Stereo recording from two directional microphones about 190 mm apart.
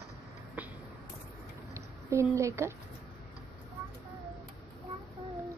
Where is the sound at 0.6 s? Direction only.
10° right (ahead or behind).